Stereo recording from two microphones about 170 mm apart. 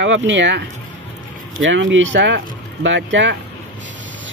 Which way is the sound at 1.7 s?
90° right.